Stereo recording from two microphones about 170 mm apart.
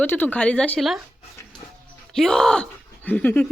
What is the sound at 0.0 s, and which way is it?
Speech, 10° left (ahead or behind).